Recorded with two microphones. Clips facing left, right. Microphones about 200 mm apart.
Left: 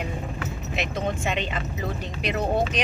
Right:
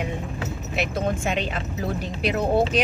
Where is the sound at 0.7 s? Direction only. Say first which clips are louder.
Right 3 dB; 5° right (ahead or behind).